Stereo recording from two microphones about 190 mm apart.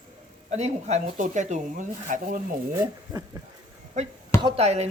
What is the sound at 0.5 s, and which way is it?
Speech, 35° right (ahead or behind).